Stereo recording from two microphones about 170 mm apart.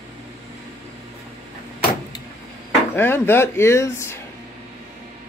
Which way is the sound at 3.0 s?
15° left (ahead or behind).